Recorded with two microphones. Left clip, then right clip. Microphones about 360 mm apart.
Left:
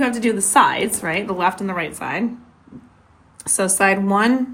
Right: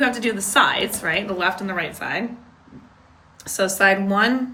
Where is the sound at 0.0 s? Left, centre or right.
Centre.